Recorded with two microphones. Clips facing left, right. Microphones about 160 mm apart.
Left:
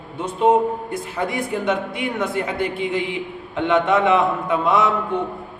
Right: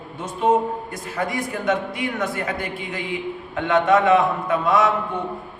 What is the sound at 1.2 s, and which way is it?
A man's voice, 25° left (ahead or behind).